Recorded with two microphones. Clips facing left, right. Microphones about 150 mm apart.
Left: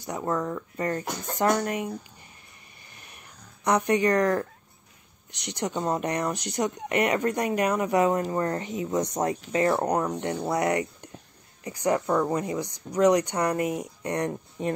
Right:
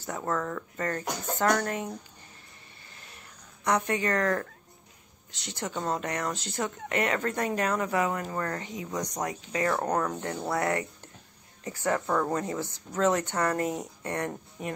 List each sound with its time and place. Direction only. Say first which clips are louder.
0.0 s speech: left 3 dB; 15° left (ahead or behind)
3.0 s a sound: left 2 dB; 15° left (ahead or behind)
5.3 s speech: left 5 dB; 20° left (ahead or behind)